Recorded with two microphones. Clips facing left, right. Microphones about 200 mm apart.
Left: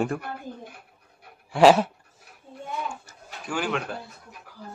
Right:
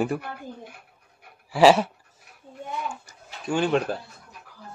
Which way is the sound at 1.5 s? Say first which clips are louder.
Even; centre (ahead or behind).